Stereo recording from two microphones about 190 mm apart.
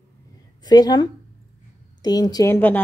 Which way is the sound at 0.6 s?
20° left (ahead or behind).